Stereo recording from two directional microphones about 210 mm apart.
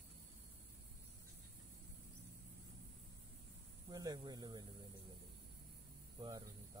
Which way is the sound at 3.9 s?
20° right (ahead or behind).